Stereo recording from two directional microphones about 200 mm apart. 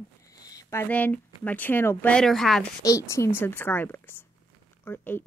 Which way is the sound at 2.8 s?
15° left (ahead or behind).